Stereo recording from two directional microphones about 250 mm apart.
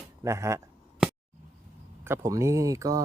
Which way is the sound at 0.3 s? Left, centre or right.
Centre.